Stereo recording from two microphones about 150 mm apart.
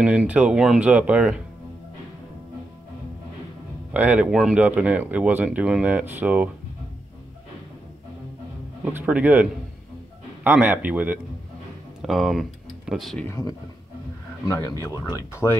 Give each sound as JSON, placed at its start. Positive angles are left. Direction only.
{"t": 0.0, "sound": "speech", "side_deg": -5}
{"t": 3.9, "sound": "speech", "side_deg": -10}
{"t": 8.8, "sound": "speech", "side_deg": -10}
{"t": 13.3, "sound": "speech", "side_deg": 20}